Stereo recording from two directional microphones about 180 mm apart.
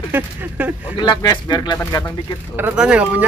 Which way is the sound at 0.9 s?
25° left (ahead or behind).